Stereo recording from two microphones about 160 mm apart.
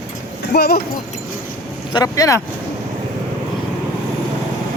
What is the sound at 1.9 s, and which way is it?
Speech, 25° left (ahead or behind).